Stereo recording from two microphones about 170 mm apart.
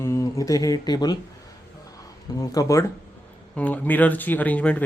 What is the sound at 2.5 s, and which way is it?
Speech, 20° left (ahead or behind).